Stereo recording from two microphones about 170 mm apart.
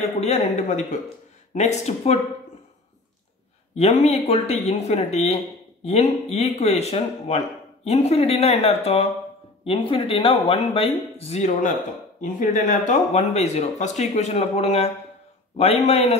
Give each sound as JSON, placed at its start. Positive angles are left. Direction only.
{"t": 0.2, "sound": "speech", "side_deg": 40}
{"t": 4.0, "sound": "speech", "side_deg": 40}